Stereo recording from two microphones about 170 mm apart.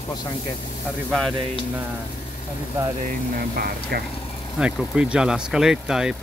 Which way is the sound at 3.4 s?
65° right (ahead or behind).